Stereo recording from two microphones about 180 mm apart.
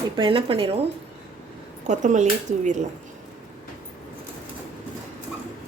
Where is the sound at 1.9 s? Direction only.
40° right (ahead or behind).